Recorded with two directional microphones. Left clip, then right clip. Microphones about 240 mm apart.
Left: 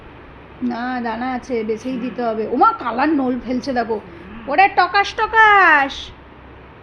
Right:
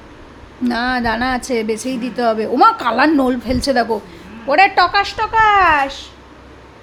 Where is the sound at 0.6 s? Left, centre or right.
Centre.